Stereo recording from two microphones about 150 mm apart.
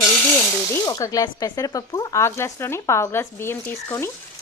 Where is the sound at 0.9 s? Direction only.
25° left (ahead or behind).